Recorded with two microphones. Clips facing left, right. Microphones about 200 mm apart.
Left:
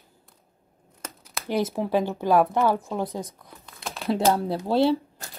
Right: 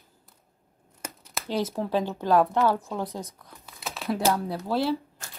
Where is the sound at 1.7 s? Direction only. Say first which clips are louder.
Left 3 dB; 15° left (ahead or behind).